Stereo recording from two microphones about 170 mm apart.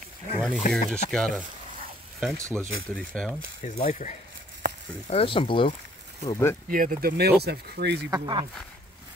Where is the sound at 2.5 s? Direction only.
5° left (ahead or behind).